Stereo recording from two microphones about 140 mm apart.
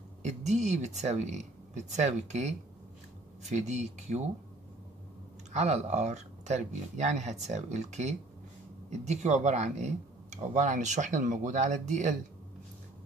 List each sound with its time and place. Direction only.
0.2 s speech: 55° right (ahead or behind)
5.5 s speech: 55° right (ahead or behind)